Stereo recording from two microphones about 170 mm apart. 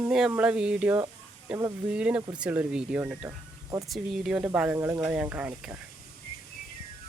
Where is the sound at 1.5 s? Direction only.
20° right (ahead or behind).